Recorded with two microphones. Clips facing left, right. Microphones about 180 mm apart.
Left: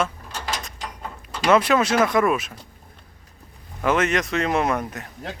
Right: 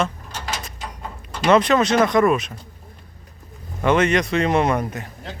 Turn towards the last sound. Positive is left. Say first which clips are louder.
# right 3 dB
turn(degrees=0)  # may be behind; listen again after turning